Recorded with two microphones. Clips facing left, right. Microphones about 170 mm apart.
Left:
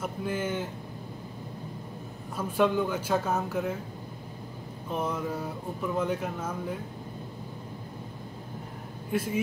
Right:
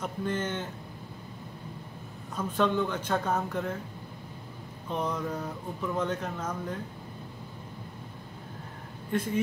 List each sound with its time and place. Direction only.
0.0 s speech: 5° left (ahead or behind)
2.3 s speech: 10° left (ahead or behind)
4.8 s speech: 5° left (ahead or behind)
9.1 s speech: 5° left (ahead or behind)